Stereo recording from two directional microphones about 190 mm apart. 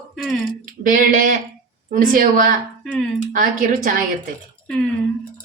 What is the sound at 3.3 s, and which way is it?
Speech, 45° right (ahead or behind).